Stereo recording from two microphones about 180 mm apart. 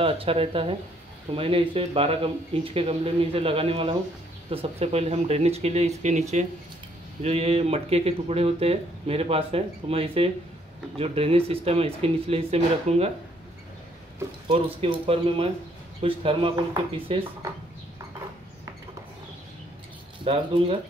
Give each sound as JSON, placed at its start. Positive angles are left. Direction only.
{"t": 0.0, "sound": "speech", "side_deg": -30}
{"t": 7.2, "sound": "speech", "side_deg": -35}
{"t": 14.5, "sound": "speech", "side_deg": -30}
{"t": 20.2, "sound": "speech", "side_deg": -30}